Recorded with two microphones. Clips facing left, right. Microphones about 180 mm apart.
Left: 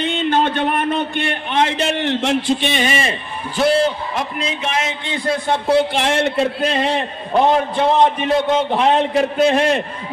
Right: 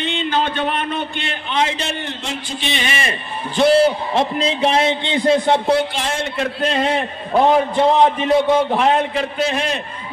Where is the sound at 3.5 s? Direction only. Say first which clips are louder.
Right 2 dB; 5° left (ahead or behind).